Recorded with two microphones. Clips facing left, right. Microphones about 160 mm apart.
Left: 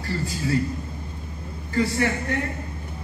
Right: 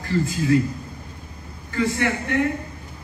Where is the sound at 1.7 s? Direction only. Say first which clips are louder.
Even; 35° left (ahead or behind).